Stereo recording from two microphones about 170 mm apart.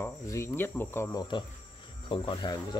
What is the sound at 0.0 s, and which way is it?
Cricket, 15° left (ahead or behind).